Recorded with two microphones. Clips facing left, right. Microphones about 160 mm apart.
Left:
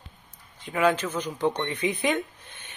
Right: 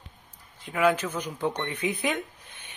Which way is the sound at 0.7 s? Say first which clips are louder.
Even; 10° right (ahead or behind).